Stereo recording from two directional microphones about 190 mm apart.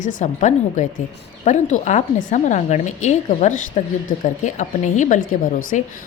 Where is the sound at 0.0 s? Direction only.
40° left (ahead or behind).